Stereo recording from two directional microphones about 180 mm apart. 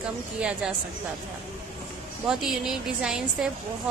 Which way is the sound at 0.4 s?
5° right (ahead or behind).